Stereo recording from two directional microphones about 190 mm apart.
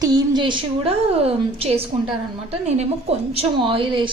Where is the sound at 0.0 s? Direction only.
20° right (ahead or behind).